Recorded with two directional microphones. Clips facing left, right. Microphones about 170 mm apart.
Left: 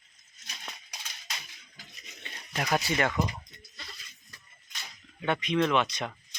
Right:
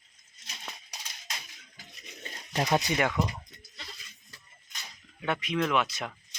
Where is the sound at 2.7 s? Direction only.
15° right (ahead or behind).